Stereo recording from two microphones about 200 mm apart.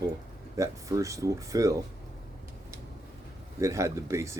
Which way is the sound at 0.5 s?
15° right (ahead or behind).